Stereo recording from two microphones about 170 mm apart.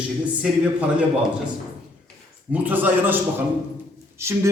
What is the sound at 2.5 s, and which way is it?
Speech, 10° right (ahead or behind).